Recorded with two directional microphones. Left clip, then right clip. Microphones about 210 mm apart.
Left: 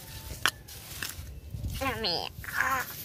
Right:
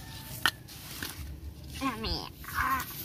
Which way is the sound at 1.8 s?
30° left (ahead or behind).